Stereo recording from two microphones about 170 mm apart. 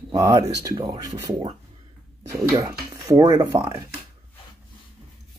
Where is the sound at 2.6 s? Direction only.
15° right (ahead or behind).